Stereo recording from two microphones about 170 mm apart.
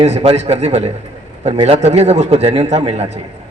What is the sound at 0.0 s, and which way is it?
A man's voice, 40° right (ahead or behind).